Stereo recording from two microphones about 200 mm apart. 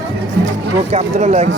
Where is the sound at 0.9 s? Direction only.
30° right (ahead or behind).